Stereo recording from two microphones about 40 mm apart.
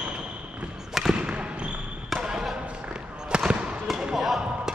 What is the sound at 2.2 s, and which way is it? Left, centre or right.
Basketball bounce, centre.